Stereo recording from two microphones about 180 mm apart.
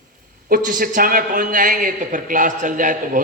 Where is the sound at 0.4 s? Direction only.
50° right (ahead or behind).